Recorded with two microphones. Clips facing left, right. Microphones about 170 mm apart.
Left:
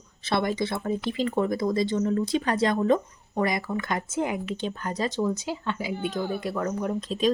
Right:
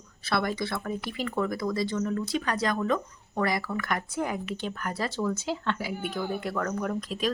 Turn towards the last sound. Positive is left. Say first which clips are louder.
# left 5 dB
turn(degrees=20)  # may be behind; listen again after turning